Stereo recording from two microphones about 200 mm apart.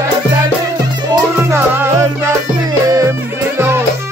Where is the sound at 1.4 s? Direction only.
10° right (ahead or behind).